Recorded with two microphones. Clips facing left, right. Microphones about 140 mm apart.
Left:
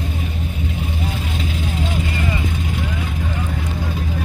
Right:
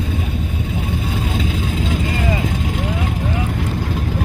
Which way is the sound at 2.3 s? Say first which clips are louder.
Right 3 dB; 90° right.